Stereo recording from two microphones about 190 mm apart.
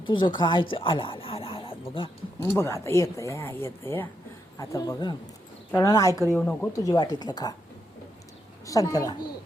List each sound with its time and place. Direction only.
0.0 s speech: 25° left (ahead or behind)
2.4 s speech: 15° left (ahead or behind)
6.3 s speech: 5° left (ahead or behind)
8.6 s speech: 20° left (ahead or behind)